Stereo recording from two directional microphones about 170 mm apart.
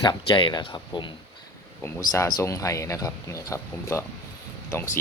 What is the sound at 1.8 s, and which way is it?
Speech, 15° left (ahead or behind).